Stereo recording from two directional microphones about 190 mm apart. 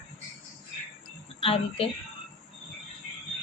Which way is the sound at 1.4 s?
30° left (ahead or behind).